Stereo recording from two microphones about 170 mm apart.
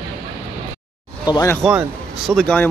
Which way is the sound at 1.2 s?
25° left (ahead or behind).